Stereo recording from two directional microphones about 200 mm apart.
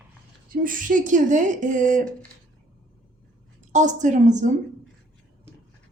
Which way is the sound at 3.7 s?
40° right (ahead or behind).